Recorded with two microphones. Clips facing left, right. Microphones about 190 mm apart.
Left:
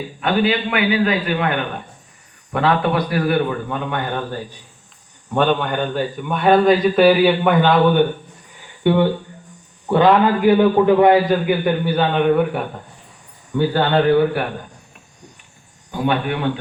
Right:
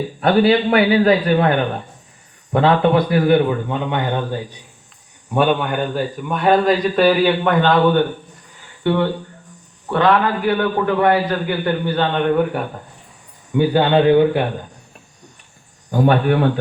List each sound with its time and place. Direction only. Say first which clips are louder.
0.2 s a man's voice: right 4 dB; 35° right (ahead or behind); by 4.4 s 20° right (ahead or behind)
5.3 s a man's voice: right 1 dB; 10° right (ahead or behind)
13.5 s a man's voice: right 2 dB; 15° right (ahead or behind)
15.9 s speech: right 5 dB; 45° right (ahead or behind)